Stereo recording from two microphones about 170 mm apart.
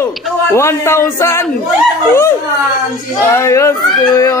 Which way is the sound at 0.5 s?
15° left (ahead or behind).